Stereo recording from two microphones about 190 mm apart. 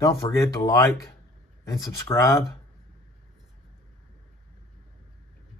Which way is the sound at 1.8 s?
15° left (ahead or behind).